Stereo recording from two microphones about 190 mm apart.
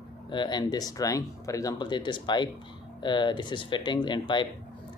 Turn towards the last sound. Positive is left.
turn(degrees=25)  # may be behind; listen again after turning